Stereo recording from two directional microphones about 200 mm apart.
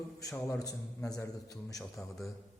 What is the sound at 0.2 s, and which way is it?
A man's voice, 15° left (ahead or behind).